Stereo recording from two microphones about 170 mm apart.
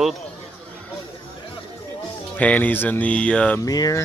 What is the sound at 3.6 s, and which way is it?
Speech, 20° left (ahead or behind).